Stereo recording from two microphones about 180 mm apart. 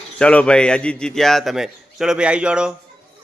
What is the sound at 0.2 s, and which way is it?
A man's voice, 5° left (ahead or behind).